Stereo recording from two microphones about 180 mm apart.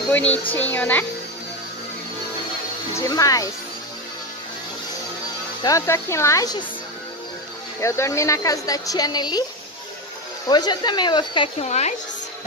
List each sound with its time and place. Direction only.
0.1 s speech: 10° left (ahead or behind)
3.0 s a woman's voice: 20° left (ahead or behind)
5.6 s speech: 20° left (ahead or behind)
7.8 s a woman's voice: 15° left (ahead or behind)
10.5 s a woman's voice: 25° left (ahead or behind)
11.6 s a woman's voice: 40° left (ahead or behind)